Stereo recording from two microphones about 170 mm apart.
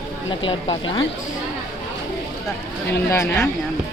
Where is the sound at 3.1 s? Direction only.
15° left (ahead or behind).